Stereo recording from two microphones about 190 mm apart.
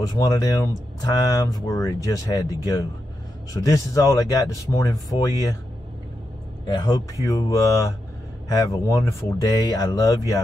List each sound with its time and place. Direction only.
0.0 s speech: 20° left (ahead or behind)
6.7 s speech: 20° left (ahead or behind)